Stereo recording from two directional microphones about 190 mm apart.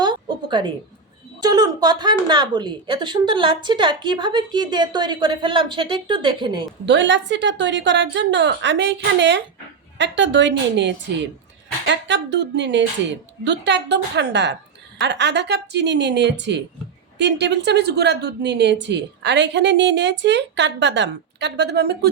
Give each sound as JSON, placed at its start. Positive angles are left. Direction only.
{"t": 0.0, "sound": "a sound", "side_deg": -25}
{"t": 1.4, "sound": "speech", "side_deg": -20}
{"t": 6.8, "sound": "a woman's voice", "side_deg": -70}